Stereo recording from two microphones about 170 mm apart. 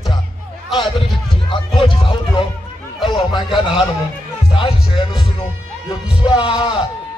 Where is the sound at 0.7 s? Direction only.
30° left (ahead or behind).